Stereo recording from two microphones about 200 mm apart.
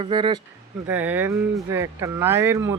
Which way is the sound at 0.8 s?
10° right (ahead or behind).